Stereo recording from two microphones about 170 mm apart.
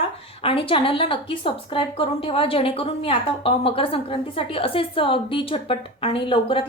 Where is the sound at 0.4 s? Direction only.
30° left (ahead or behind).